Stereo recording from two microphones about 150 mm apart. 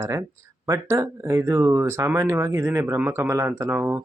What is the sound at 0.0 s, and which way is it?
Speech, 20° right (ahead or behind).